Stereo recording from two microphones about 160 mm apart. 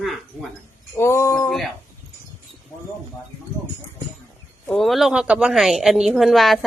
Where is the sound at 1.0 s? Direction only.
15° left (ahead or behind).